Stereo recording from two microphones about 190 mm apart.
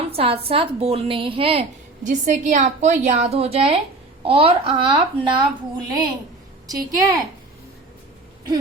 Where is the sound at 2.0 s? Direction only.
40° right (ahead or behind); by 6.0 s 25° right (ahead or behind).